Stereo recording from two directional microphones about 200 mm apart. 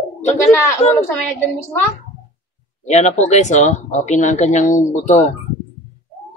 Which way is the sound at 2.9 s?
35° left (ahead or behind).